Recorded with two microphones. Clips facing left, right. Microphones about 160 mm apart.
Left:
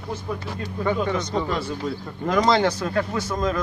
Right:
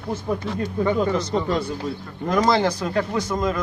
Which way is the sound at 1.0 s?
30° right (ahead or behind).